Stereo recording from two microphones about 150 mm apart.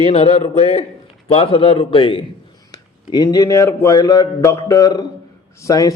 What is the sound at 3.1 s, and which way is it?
A man's voice, 25° left (ahead or behind).